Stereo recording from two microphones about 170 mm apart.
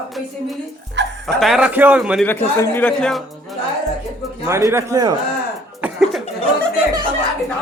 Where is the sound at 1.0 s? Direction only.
90° right.